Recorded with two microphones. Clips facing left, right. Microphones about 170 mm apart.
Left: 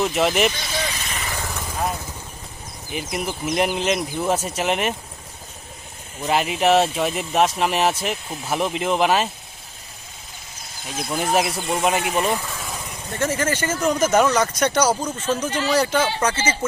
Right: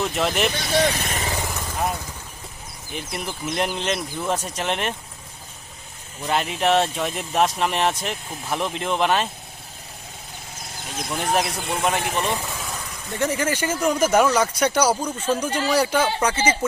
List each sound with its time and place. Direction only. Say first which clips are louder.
0.0 s speech: left 3 dB; 5° left (ahead or behind)
0.5 s speech: right 7 dB; 65° right (ahead or behind)
1.3 s vehicle: right 2 dB; 20° right (ahead or behind)
1.6 s vehicle: left 1 dB; 5° left (ahead or behind)
2.9 s speech: left 4 dB; 5° left (ahead or behind)
6.2 s speech: left 3 dB; 5° left (ahead or behind)
10.9 s speech: left 2 dB; 5° left (ahead or behind)
12.2 s vehicle: left 2 dB; centre (ahead or behind)
13.1 s speech: even; 15° right (ahead or behind)